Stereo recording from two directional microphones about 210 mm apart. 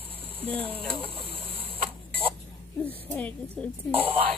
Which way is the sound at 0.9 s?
25° right (ahead or behind).